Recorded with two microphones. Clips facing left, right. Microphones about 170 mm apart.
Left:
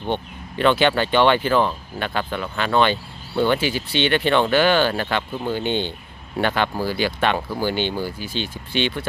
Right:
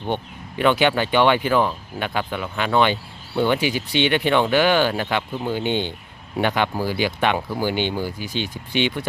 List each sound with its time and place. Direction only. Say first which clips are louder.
0.0 s speech: left 1 dB; 10° right (ahead or behind)